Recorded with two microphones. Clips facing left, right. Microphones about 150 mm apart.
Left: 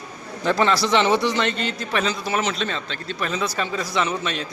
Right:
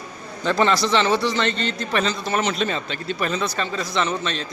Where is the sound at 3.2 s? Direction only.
10° left (ahead or behind).